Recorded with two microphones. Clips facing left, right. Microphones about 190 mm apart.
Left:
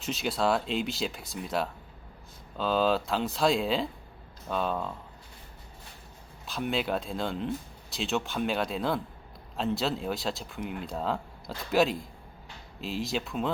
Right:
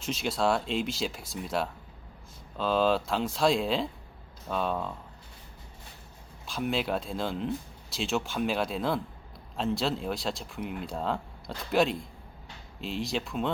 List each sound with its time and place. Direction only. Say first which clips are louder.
0.0 s speech: even; centre (ahead or behind)
6.4 s speech: even; centre (ahead or behind)